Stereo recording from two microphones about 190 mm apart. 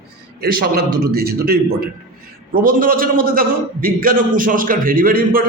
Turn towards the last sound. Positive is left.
turn(degrees=-50)  # may be behind; listen again after turning